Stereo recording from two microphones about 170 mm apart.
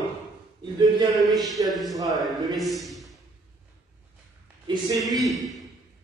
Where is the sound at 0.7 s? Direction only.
25° right (ahead or behind).